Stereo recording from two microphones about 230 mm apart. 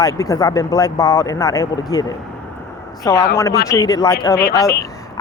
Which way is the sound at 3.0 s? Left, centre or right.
Centre.